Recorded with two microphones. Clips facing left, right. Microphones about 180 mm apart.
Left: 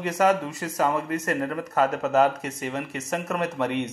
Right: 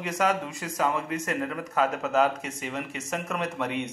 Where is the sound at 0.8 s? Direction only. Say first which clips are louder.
Left 3 dB; 60° left (ahead or behind).